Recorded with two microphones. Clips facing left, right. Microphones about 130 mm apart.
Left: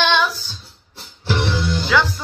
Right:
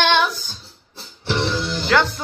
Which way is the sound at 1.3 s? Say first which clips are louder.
Left 1 dB; 5° left (ahead or behind).